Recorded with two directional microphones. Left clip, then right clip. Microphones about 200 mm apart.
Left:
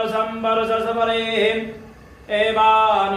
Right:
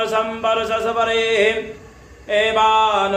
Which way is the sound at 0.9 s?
50° right (ahead or behind).